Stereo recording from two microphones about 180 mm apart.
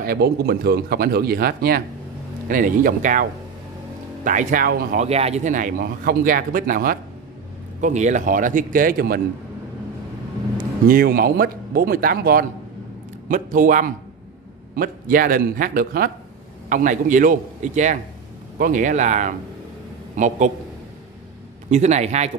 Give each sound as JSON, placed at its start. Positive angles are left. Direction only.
{"t": 0.0, "sound": "speech", "side_deg": -60}
{"t": 5.0, "sound": "speech", "side_deg": -35}
{"t": 10.9, "sound": "speech", "side_deg": -55}
{"t": 21.6, "sound": "a man's voice", "side_deg": -40}